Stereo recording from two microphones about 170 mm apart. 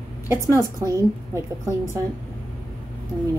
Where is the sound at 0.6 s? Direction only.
20° right (ahead or behind).